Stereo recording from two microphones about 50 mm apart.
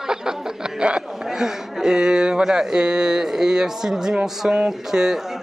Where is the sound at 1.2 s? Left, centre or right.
Centre.